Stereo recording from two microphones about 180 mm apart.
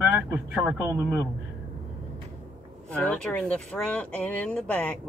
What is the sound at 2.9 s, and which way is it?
Speech, 10° left (ahead or behind).